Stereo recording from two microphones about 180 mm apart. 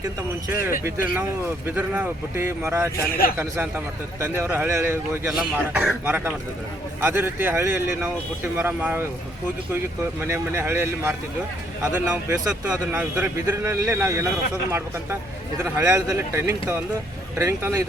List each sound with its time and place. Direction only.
1.1 s a man's voice: 10° right (ahead or behind)
3.0 s speech: 55° left (ahead or behind)
4.2 s a man's voice: 10° right (ahead or behind)